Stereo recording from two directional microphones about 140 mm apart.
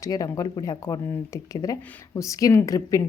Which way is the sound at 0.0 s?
25° left (ahead or behind).